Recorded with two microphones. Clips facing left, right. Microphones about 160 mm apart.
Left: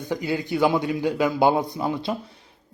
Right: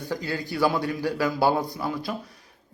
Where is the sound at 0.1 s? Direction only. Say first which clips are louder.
Left 5 dB; 20° left (ahead or behind).